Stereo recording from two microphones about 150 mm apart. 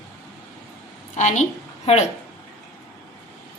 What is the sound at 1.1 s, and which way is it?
Speech, 55° left (ahead or behind).